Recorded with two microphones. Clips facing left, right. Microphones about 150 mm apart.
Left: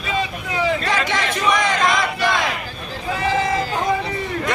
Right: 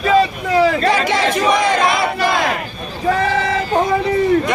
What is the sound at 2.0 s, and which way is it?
Battle cry, 50° right (ahead or behind).